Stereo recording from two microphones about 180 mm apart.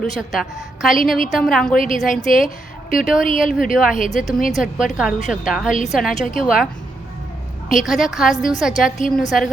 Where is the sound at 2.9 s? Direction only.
50° left (ahead or behind).